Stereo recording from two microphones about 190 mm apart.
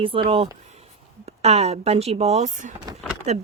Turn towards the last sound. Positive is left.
turn(degrees=-35)  # may be behind; listen again after turning